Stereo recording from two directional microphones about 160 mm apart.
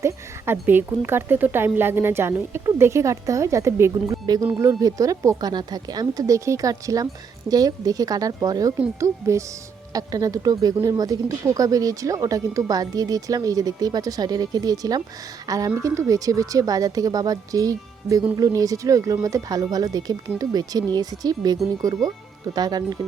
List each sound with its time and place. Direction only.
0.0 s speech: 15° right (ahead or behind)